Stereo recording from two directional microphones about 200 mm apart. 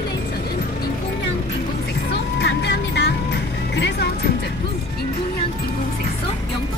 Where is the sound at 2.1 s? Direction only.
60° left (ahead or behind).